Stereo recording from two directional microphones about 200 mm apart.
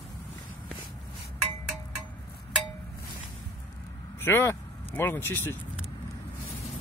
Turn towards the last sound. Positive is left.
turn(degrees=10)  # may be behind; listen again after turning